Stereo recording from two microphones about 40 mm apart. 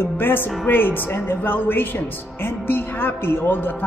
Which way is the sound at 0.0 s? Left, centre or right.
Left.